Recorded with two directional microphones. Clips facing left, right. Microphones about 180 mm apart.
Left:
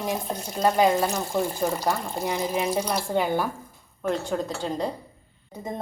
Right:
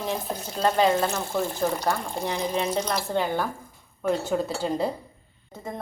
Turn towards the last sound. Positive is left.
turn(degrees=20)  # may be behind; listen again after turning